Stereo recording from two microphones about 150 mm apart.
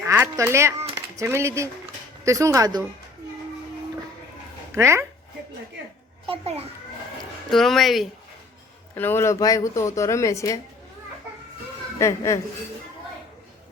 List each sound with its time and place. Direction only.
0.0 s speech: 15° right (ahead or behind)
4.7 s speech: 15° right (ahead or behind)
6.2 s a child's voice: 40° right (ahead or behind)
7.5 s speech: centre (ahead or behind)
9.0 s speech: 15° left (ahead or behind)
11.9 s speech: 20° left (ahead or behind)